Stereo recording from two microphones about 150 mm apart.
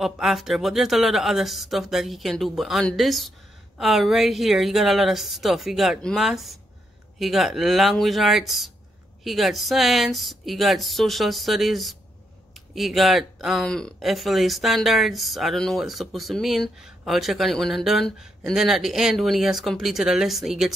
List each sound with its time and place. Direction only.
0.0 s speech: centre (ahead or behind)